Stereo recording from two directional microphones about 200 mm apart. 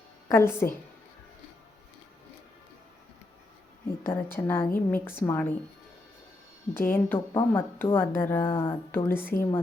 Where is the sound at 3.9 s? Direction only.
10° left (ahead or behind).